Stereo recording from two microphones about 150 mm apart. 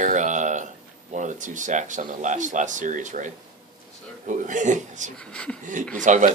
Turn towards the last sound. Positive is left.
turn(degrees=-55)  # may be behind; listen again after turning